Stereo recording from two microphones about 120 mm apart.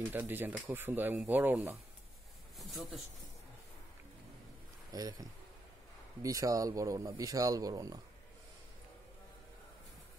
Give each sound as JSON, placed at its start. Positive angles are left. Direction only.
{"t": 0.1, "sound": "speech", "side_deg": -15}
{"t": 4.9, "sound": "speech", "side_deg": -30}
{"t": 6.2, "sound": "speech", "side_deg": -30}